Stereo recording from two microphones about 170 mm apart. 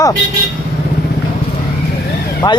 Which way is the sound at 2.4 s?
25° left (ahead or behind).